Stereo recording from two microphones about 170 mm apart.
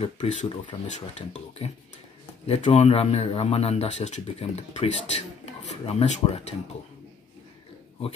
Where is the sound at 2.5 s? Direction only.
40° left (ahead or behind).